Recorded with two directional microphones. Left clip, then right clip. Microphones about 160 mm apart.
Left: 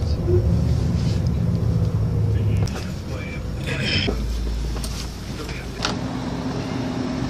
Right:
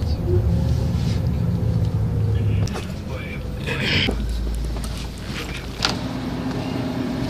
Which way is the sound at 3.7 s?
25° right (ahead or behind).